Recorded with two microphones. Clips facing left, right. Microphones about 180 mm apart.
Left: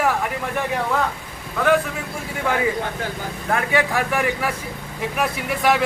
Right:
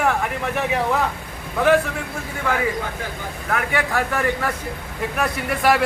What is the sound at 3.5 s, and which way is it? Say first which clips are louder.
Speech: left 2 dB; 25° left (ahead or behind).